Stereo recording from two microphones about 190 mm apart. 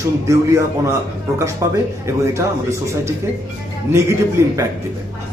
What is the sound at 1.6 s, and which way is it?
A man's voice, 15° right (ahead or behind).